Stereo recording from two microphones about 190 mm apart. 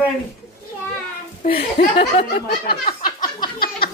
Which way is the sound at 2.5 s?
50° left (ahead or behind).